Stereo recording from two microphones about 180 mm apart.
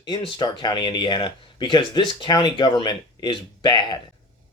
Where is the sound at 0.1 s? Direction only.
25° left (ahead or behind).